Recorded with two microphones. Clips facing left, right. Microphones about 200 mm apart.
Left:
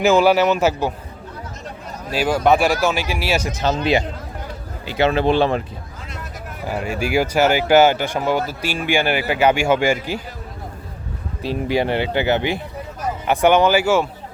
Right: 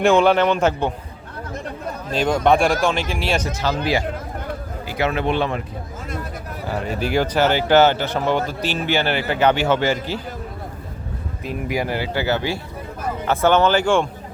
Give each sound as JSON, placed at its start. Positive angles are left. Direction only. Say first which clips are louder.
{"t": 0.0, "sound": "a man's voice", "louder": "left 1 dB", "side_deg": 5}
{"t": 2.0, "sound": "a man's voice", "louder": "left 1 dB", "side_deg": 5}
{"t": 4.9, "sound": "speech", "louder": "left 4 dB", "side_deg": 25}
{"t": 6.7, "sound": "speech", "louder": "left 1 dB", "side_deg": 10}
{"t": 11.4, "sound": "speech", "louder": "left 4 dB", "side_deg": 25}